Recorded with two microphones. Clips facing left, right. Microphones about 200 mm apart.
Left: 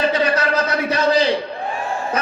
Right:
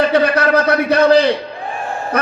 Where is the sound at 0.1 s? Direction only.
60° right (ahead or behind).